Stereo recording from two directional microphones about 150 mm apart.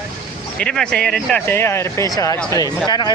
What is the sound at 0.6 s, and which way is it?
Speech, 5° left (ahead or behind).